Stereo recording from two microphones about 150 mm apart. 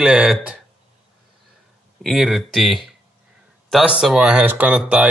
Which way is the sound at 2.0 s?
Centre (ahead or behind).